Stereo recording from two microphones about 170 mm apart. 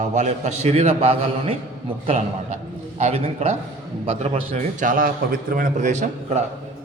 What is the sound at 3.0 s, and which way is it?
A man's voice, 40° right (ahead or behind).